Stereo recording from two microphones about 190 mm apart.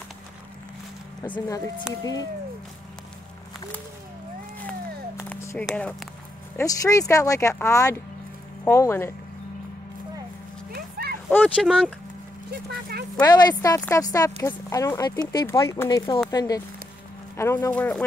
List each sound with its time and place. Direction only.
1.2 s speech: 15° left (ahead or behind)
5.3 s speech: 5° left (ahead or behind)
6.5 s speech: 15° left (ahead or behind)
10.7 s horse: 50° right (ahead or behind)
11.2 s speech: 5° left (ahead or behind)
12.4 s speech: 55° right (ahead or behind)
13.2 s speech: 20° left (ahead or behind)